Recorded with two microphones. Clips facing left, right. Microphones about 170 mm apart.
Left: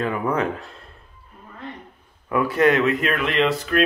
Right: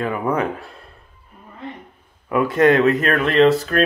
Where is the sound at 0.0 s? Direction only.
15° right (ahead or behind).